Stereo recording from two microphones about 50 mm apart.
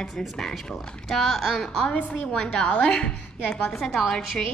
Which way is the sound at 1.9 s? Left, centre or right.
Left.